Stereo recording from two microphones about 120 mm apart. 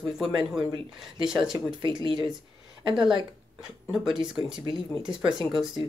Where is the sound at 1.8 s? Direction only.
40° right (ahead or behind).